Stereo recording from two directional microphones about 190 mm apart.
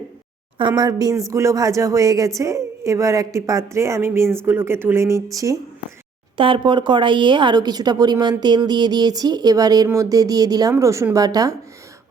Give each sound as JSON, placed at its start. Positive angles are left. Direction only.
{"t": 0.8, "sound": "a woman's voice", "side_deg": -20}
{"t": 6.3, "sound": "speech", "side_deg": -25}